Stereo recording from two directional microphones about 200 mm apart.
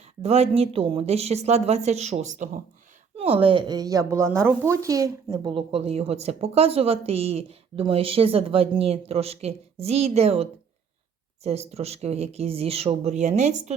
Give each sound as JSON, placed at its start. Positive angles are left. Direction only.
{"t": 0.2, "sound": "a woman's voice", "side_deg": -30}